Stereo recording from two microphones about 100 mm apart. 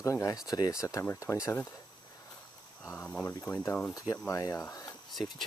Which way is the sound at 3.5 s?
40° left (ahead or behind).